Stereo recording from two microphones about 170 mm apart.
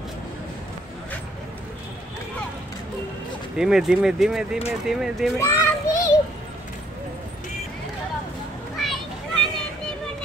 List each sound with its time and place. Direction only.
3.5 s speech: 5° right (ahead or behind)
5.4 s a child's voice: 20° left (ahead or behind)
8.7 s children playing: centre (ahead or behind)